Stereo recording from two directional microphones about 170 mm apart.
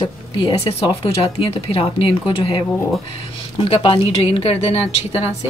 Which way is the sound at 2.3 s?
30° left (ahead or behind).